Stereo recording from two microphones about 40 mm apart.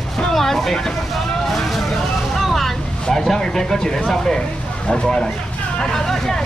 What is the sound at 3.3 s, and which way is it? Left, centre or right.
Speech, centre.